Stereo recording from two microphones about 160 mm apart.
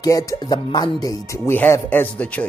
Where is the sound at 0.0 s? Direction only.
20° left (ahead or behind).